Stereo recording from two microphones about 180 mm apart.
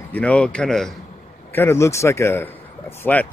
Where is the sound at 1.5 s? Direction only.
15° left (ahead or behind).